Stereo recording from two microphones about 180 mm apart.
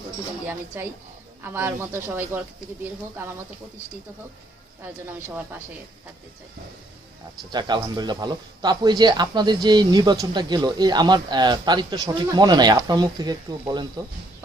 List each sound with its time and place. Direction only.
0.7 s speech: 10° right (ahead or behind)
7.5 s a man's voice: 25° right (ahead or behind)